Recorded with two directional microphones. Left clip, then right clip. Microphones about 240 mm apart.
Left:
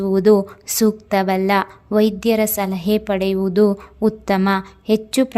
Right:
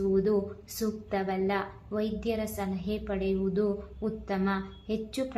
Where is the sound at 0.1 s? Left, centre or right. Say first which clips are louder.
Left 16 dB; left.